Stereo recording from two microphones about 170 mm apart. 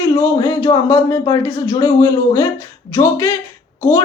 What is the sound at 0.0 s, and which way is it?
Speech, 20° left (ahead or behind).